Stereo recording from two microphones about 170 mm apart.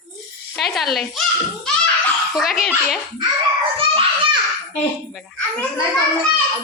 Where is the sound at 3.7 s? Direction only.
30° right (ahead or behind).